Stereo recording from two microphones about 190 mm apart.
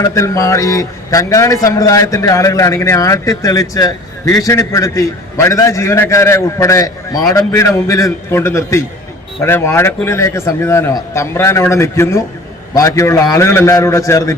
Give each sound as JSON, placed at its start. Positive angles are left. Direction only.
{"t": 0.0, "sound": "a man's voice", "side_deg": 15}